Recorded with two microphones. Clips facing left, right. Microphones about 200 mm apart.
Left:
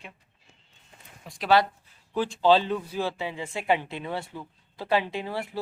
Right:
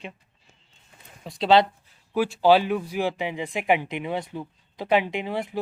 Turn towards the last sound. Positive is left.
turn(degrees=-20)  # may be behind; listen again after turning